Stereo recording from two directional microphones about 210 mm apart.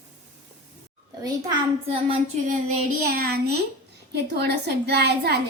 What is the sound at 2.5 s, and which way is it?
A woman's voice, 40° right (ahead or behind).